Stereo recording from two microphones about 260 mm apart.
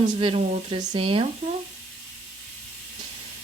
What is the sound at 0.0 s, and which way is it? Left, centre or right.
A woman's voice, right.